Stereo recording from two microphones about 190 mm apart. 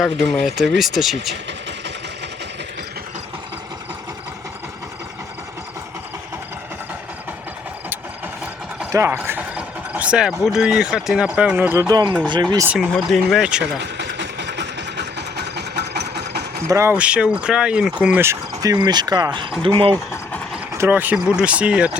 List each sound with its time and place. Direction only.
0.0 s speech: centre (ahead or behind)
8.9 s speech: 15° right (ahead or behind)
12.6 s speech: centre (ahead or behind)
14.0 s vehicle: 65° right (ahead or behind)
16.6 s speech: 15° right (ahead or behind)
20.7 s speech: 10° right (ahead or behind)